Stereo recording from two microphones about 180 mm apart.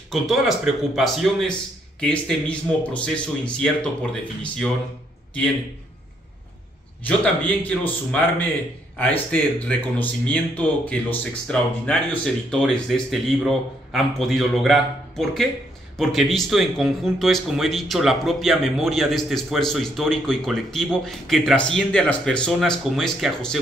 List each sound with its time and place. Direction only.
0.1 s speech: centre (ahead or behind)
7.1 s a man's voice: 10° left (ahead or behind)